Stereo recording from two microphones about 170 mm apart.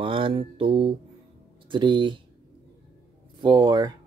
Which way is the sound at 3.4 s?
25° right (ahead or behind).